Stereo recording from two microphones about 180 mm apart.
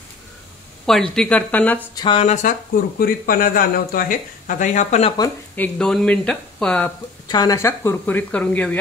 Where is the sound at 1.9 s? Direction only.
30° left (ahead or behind).